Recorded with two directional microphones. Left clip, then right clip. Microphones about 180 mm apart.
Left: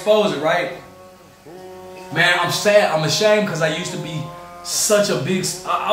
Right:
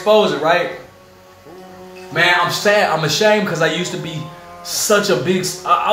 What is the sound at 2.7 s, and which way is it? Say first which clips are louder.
A man's voice: left 1 dB; 15° right (ahead or behind).